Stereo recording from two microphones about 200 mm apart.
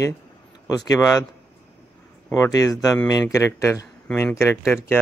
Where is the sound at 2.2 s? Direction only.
15° left (ahead or behind).